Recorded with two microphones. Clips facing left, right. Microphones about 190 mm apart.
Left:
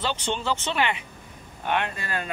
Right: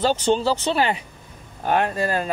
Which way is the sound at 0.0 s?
40° right (ahead or behind).